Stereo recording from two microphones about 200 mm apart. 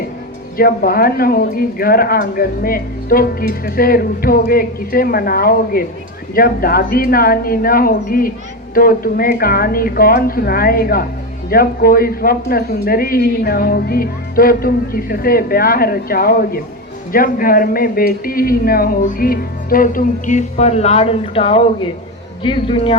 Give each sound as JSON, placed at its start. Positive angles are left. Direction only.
{"t": 0.5, "sound": "speech", "side_deg": 45}